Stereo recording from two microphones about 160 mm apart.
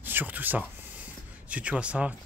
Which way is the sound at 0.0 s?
10° right (ahead or behind).